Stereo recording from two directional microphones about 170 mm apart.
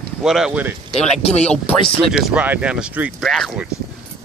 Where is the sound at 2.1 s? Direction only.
5° right (ahead or behind).